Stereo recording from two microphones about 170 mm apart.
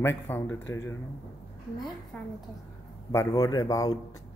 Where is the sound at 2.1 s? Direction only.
5° left (ahead or behind).